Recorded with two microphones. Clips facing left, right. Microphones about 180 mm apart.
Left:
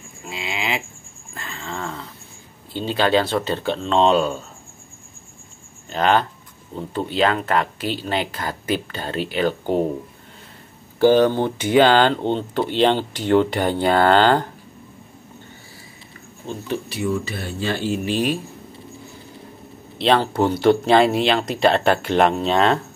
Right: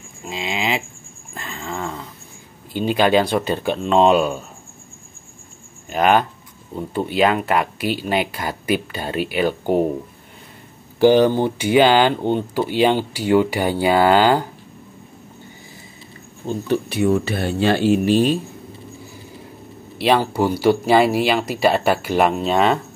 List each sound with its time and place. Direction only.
0.3 s a sound: 20° right (ahead or behind)
2.7 s speech: 15° right (ahead or behind)
5.9 s speech: 10° right (ahead or behind)
11.0 s speech: 15° right (ahead or behind)
16.9 s speech: 60° right (ahead or behind)
18.0 s speech: 30° right (ahead or behind)
20.0 s speech: 10° right (ahead or behind)